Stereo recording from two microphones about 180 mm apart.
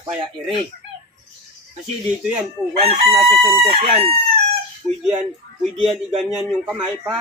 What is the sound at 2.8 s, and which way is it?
Chicken, 30° right (ahead or behind).